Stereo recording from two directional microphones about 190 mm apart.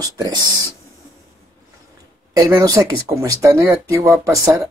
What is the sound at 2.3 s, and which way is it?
Speech, 20° right (ahead or behind).